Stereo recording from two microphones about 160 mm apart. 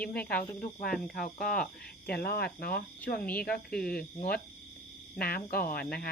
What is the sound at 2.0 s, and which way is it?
Speech, 75° left (ahead or behind).